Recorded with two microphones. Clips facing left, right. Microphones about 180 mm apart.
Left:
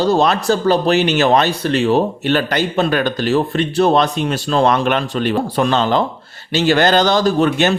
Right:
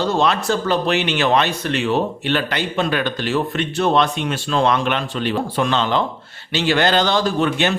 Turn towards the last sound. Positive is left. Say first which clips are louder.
# left 4 dB
turn(degrees=40)  # may be behind; listen again after turning